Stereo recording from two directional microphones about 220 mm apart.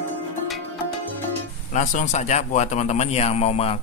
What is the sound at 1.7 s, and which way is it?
A man's voice, 35° left (ahead or behind).